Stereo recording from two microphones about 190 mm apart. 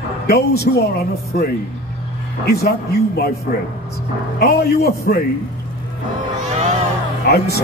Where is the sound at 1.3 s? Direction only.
45° left (ahead or behind).